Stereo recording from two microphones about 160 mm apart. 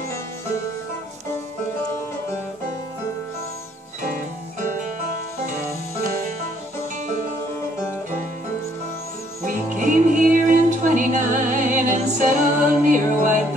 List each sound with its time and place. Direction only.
4.0 s music: 55° right (ahead or behind)
9.4 s music: 50° right (ahead or behind)